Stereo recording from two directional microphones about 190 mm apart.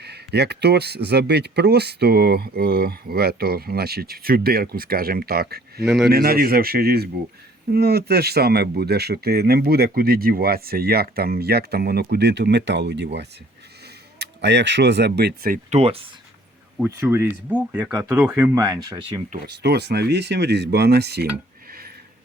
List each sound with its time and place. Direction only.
0.0 s speech: 60° right (ahead or behind)
5.8 s speech: centre (ahead or behind)
6.1 s speech: 55° right (ahead or behind)
14.2 s speech: 65° right (ahead or behind); by 15.8 s 45° right (ahead or behind)
15.8 s speech: 30° right (ahead or behind)
16.8 s speech: 15° right (ahead or behind)
19.6 s speech: 60° right (ahead or behind)